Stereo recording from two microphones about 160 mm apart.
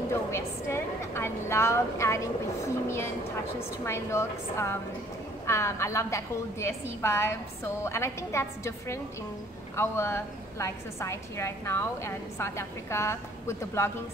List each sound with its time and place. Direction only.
0.1 s a woman's voice: 15° left (ahead or behind)